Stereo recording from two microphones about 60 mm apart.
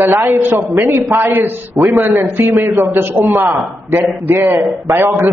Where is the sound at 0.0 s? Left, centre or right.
Right.